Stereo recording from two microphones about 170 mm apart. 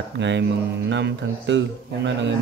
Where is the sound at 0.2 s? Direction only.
90° right.